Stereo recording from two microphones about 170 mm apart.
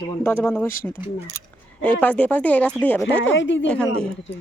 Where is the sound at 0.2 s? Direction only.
15° left (ahead or behind).